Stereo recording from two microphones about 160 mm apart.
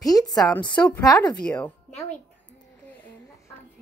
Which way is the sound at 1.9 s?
45° left (ahead or behind).